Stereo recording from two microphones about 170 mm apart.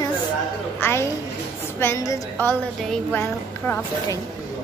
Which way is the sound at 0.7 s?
15° left (ahead or behind).